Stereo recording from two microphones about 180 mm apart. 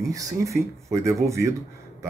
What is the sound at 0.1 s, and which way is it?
Speech, 20° right (ahead or behind).